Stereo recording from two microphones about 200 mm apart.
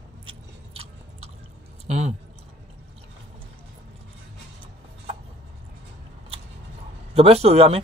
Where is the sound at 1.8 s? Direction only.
35° right (ahead or behind).